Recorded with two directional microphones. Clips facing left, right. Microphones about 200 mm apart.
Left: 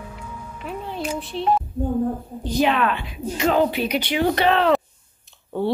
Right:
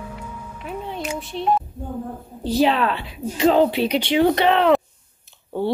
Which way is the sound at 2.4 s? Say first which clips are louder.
Right 2 dB; 35° right (ahead or behind).